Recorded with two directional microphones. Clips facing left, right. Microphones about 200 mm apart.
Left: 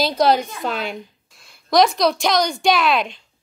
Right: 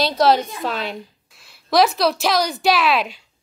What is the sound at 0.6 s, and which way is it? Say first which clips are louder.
A woman's voice: even; centre (ahead or behind).